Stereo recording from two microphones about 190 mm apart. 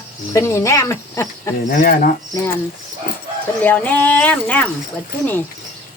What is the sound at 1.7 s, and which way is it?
Speech, 50° left (ahead or behind).